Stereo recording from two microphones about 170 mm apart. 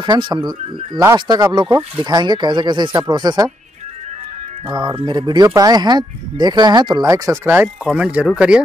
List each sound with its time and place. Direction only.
0.0 s speech: 25° right (ahead or behind)
4.6 s speech: 25° right (ahead or behind)
7.4 s speech: 10° right (ahead or behind)